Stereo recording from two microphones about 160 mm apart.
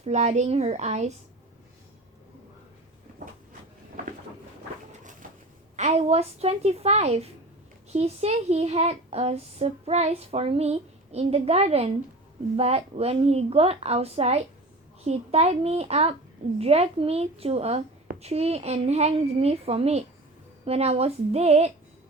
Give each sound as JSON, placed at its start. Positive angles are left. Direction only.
{"t": 0.0, "sound": "a child's voice", "side_deg": -45}
{"t": 5.2, "sound": "a sound", "side_deg": -60}
{"t": 5.7, "sound": "a child's voice", "side_deg": -45}